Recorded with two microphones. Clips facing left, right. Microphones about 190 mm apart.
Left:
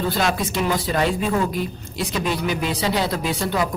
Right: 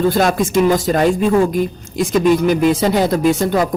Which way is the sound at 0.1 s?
45° right (ahead or behind).